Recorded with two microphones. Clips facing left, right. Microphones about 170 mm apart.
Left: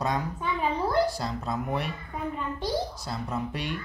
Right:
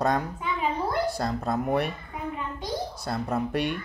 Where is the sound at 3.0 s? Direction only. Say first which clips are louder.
Right 4 dB; 55° right (ahead or behind).